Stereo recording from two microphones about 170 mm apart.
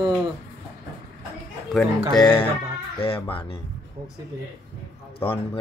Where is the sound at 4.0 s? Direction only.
35° right (ahead or behind).